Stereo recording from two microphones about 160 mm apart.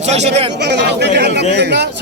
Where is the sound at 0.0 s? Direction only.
45° right (ahead or behind).